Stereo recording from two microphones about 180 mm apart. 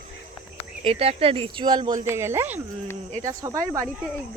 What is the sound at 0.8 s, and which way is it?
Speech, 35° right (ahead or behind).